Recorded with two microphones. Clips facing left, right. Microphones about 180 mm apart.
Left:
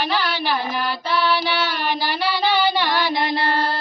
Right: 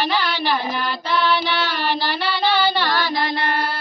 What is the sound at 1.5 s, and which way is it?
Child singing, 5° left (ahead or behind).